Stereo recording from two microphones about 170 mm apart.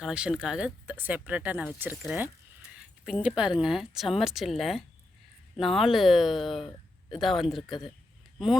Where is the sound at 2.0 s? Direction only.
10° right (ahead or behind).